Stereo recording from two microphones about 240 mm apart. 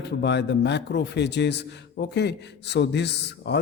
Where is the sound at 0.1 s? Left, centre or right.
Left.